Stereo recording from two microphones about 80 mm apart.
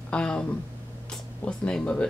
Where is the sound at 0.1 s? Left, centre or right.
Centre.